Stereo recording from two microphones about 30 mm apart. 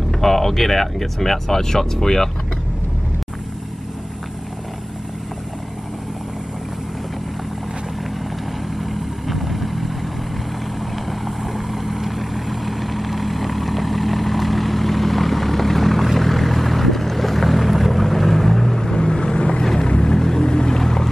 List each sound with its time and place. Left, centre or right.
0.1 s speech: centre
8.7 s vehicle: centre
18.8 s boat: left
20.0 s vehicle: centre